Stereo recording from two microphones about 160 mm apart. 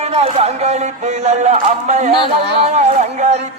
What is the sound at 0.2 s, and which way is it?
Speech, 45° right (ahead or behind).